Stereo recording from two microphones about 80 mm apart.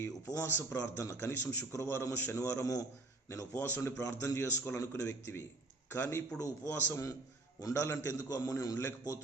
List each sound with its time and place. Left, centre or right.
0.0 s a man's voice: left
3.2 s a man's voice: left